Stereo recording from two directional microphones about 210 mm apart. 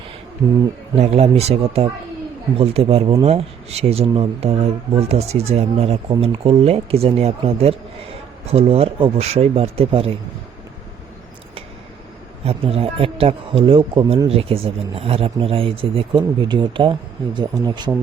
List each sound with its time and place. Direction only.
0.9 s speech: 30° right (ahead or behind)
12.5 s speech: 25° right (ahead or behind)